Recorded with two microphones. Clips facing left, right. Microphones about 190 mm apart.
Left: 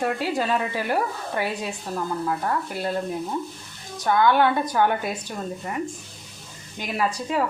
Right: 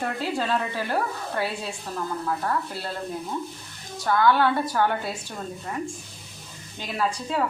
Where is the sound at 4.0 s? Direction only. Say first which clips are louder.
Left 2 dB; 20° left (ahead or behind).